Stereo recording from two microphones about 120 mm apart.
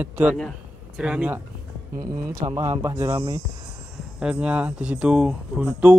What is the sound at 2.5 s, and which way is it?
Speech, 20° right (ahead or behind).